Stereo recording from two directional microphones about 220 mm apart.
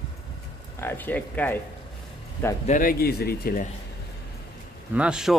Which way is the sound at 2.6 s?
40° left (ahead or behind).